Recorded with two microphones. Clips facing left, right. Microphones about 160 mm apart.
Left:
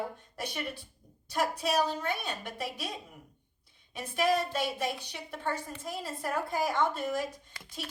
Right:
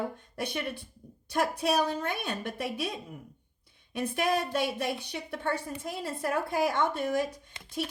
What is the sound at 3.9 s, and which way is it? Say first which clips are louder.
A woman's voice: even; 55° right (ahead or behind).